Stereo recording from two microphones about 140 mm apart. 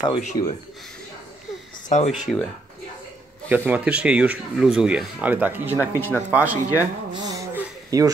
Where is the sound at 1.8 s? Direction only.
55° left (ahead or behind).